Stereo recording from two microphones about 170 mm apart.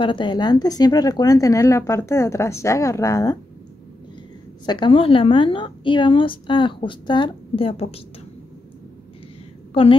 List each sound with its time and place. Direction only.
0.0 s a woman's voice: 30° left (ahead or behind)
4.6 s a woman's voice: 25° left (ahead or behind)